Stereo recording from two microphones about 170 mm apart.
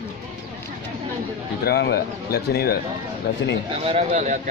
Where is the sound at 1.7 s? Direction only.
70° left (ahead or behind).